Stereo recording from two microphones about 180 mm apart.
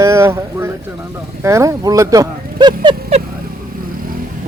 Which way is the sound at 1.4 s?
15° right (ahead or behind).